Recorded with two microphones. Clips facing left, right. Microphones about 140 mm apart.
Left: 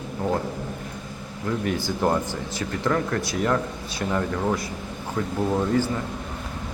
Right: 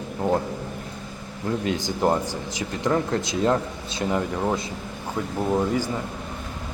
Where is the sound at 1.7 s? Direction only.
15° right (ahead or behind).